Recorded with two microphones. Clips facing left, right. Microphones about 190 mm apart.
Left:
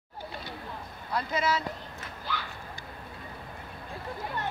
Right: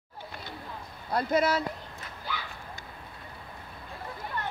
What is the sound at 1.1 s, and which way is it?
Speech, 50° right (ahead or behind).